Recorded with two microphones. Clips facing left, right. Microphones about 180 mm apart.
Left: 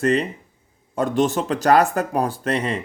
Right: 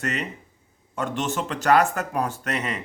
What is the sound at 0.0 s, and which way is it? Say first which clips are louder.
Speech: left 10 dB; 30° left (ahead or behind).